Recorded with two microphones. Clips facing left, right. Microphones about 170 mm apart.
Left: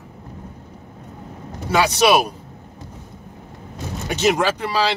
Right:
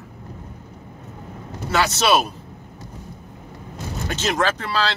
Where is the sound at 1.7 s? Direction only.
10° left (ahead or behind).